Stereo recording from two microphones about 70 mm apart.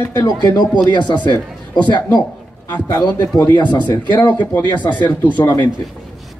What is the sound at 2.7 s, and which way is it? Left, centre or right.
A man's voice, left.